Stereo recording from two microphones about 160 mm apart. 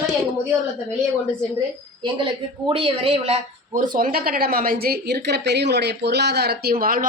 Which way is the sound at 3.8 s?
60° right (ahead or behind).